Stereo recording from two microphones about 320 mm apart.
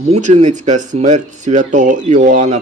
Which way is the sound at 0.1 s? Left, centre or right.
Right.